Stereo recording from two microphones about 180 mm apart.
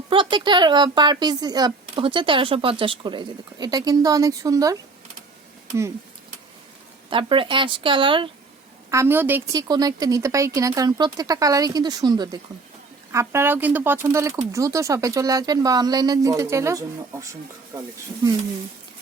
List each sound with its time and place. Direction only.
0.1 s speech: 25° right (ahead or behind)
7.1 s speech: 30° right (ahead or behind)
8.9 s speech: 15° right (ahead or behind)